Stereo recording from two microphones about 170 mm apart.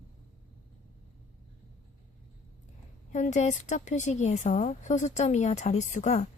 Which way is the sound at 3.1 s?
45° left (ahead or behind).